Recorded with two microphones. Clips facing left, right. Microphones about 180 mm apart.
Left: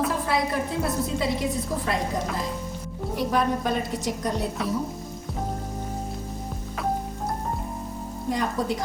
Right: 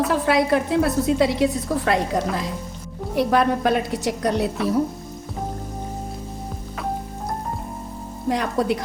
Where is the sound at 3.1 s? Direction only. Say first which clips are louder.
Right 5 dB; 75° right (ahead or behind).